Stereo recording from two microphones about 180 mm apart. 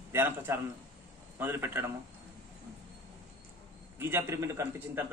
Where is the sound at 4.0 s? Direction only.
15° right (ahead or behind).